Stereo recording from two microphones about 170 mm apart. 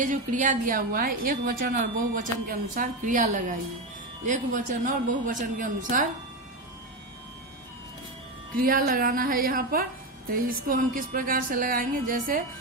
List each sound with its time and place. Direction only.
0.0 s a woman's voice: 50° right (ahead or behind)
8.5 s speech: 60° right (ahead or behind)